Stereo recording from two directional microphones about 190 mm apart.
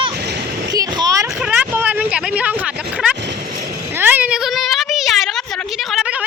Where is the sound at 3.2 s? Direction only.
60° right (ahead or behind).